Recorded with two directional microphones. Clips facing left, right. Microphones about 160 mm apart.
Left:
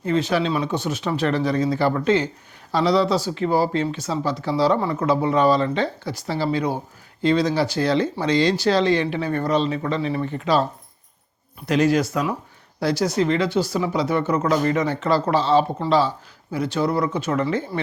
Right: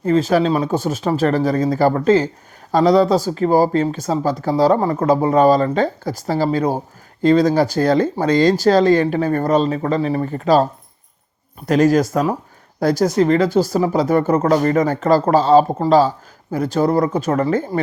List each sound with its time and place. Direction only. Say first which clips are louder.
0.0 s speech: right 6 dB; 45° right (ahead or behind)